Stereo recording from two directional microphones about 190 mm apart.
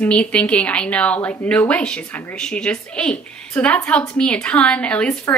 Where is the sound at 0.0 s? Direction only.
5° left (ahead or behind).